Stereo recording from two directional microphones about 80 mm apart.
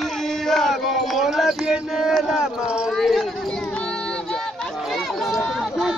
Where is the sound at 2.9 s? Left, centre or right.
Centre.